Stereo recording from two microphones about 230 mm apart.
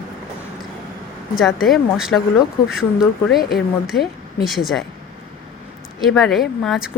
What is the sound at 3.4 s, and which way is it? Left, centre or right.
Speech, left.